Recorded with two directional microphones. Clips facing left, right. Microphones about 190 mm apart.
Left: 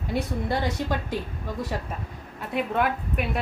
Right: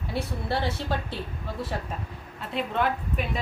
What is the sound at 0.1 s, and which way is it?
Speech, 15° left (ahead or behind).